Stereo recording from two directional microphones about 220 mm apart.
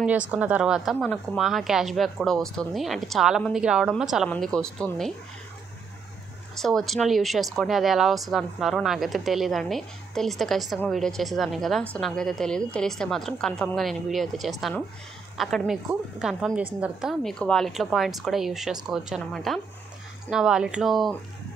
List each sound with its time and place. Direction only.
0.0 s speech: 5° right (ahead or behind)
6.5 s speech: centre (ahead or behind)